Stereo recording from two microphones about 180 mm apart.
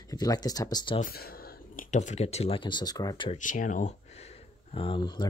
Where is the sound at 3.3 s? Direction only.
45° left (ahead or behind); by 5.3 s 25° left (ahead or behind).